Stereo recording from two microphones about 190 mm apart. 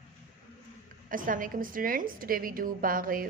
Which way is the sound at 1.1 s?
45° right (ahead or behind).